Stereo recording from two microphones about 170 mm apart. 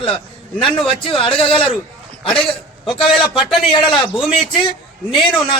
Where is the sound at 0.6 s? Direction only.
30° left (ahead or behind).